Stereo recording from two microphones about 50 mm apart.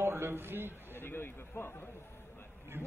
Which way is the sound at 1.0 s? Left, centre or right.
Left.